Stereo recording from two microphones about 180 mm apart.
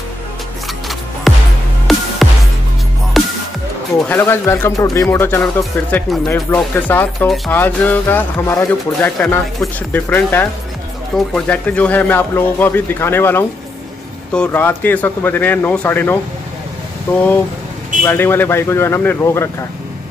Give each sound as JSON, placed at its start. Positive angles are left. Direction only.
{"t": 1.3, "sound": "music", "side_deg": 0}
{"t": 3.1, "sound": "music", "side_deg": 0}
{"t": 4.1, "sound": "speech", "side_deg": 15}